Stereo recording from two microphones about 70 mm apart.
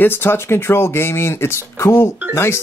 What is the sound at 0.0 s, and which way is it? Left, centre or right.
Speech, left.